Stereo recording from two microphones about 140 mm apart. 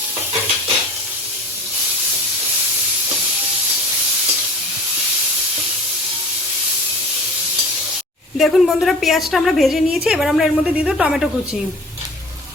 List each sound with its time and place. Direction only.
8.4 s a woman's voice: centre (ahead or behind)